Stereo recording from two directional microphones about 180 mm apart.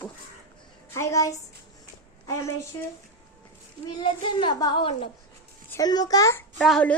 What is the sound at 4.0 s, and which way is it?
A child's voice, 25° left (ahead or behind).